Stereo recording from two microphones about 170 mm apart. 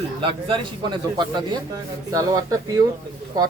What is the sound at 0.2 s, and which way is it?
Speech, 30° right (ahead or behind).